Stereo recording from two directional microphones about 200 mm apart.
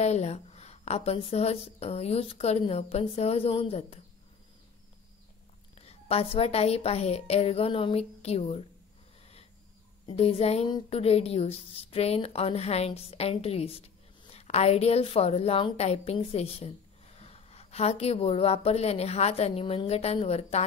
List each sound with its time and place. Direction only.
0.0 s a woman's voice: 35° left (ahead or behind)
5.8 s a woman's voice: 30° left (ahead or behind)
10.0 s a woman's voice: 30° left (ahead or behind)